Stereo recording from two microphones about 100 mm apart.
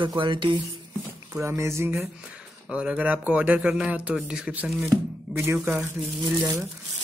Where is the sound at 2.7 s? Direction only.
10° right (ahead or behind).